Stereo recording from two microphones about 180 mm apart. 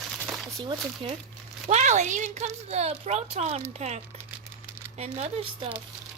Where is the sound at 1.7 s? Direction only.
40° right (ahead or behind).